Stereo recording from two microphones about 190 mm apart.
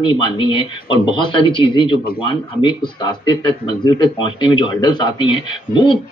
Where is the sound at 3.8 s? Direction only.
25° left (ahead or behind).